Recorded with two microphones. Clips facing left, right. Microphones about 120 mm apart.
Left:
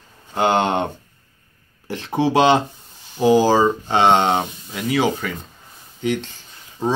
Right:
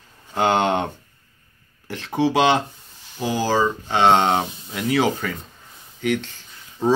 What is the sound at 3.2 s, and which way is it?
Speech, 20° left (ahead or behind).